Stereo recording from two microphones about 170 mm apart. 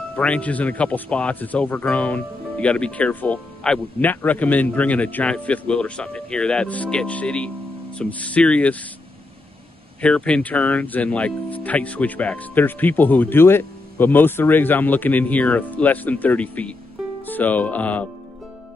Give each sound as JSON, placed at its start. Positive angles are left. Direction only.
{"t": 0.1, "sound": "speech", "side_deg": 10}
{"t": 10.0, "sound": "speech", "side_deg": 5}